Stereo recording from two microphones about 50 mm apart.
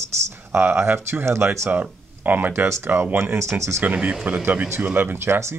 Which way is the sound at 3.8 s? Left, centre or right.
Right.